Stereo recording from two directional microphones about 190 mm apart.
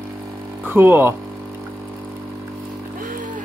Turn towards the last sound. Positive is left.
turn(degrees=-40)  # may be behind; listen again after turning